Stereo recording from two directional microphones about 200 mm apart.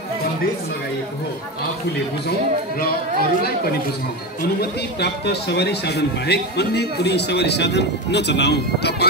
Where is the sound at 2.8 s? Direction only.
50° left (ahead or behind).